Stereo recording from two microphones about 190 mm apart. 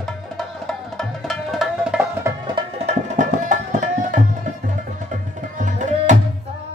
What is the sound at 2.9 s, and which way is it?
Music, 40° right (ahead or behind).